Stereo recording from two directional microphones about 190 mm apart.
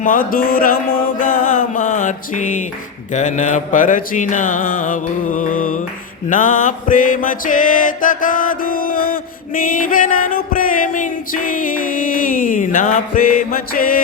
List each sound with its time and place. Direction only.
0.0 s mantra: 45° left (ahead or behind)
3.1 s music: 40° left (ahead or behind)